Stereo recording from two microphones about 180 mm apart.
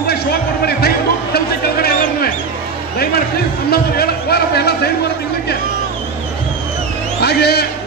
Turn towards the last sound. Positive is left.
turn(degrees=65)  # may be behind; listen again after turning